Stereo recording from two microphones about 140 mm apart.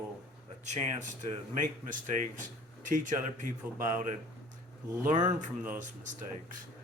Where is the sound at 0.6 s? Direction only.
60° right (ahead or behind).